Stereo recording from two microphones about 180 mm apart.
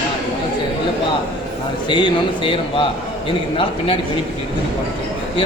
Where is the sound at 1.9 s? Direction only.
30° left (ahead or behind).